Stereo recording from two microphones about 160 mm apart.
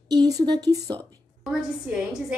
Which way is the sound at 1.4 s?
Centre (ahead or behind).